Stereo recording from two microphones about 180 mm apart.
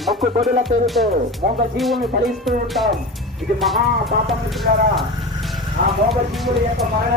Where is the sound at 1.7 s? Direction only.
Centre (ahead or behind).